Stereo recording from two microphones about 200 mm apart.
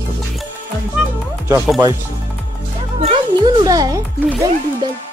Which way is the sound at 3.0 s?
25° right (ahead or behind).